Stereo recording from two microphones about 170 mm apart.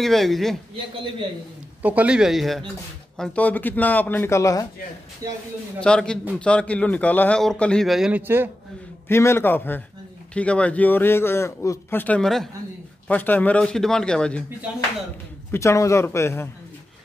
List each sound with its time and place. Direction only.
0.0 s a man's voice: centre (ahead or behind)
1.8 s a man's voice: 10° right (ahead or behind); by 4.6 s 20° left (ahead or behind)
5.2 s speech: 20° right (ahead or behind)
5.8 s a man's voice: 5° left (ahead or behind); by 8.5 s 10° right (ahead or behind)
9.0 s a man's voice: 15° left (ahead or behind)
15.5 s a man's voice: 15° left (ahead or behind)